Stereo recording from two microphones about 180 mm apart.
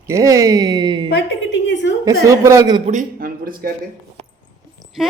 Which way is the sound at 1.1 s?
85° left.